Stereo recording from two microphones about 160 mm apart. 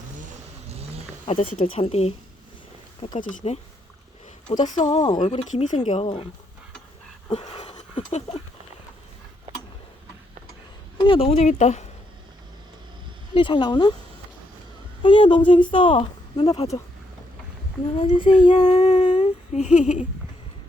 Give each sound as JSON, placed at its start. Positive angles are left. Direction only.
{"t": 1.3, "sound": "a woman's voice", "side_deg": 35}
{"t": 3.2, "sound": "speech", "side_deg": 50}
{"t": 5.3, "sound": "speech", "side_deg": 40}
{"t": 7.3, "sound": "a sound", "side_deg": 40}
{"t": 10.9, "sound": "a woman's voice", "side_deg": 30}
{"t": 13.3, "sound": "speech", "side_deg": 30}
{"t": 15.0, "sound": "a woman's voice", "side_deg": 30}
{"t": 18.0, "sound": "a woman's voice", "side_deg": 30}
{"t": 18.3, "sound": "speech", "side_deg": 50}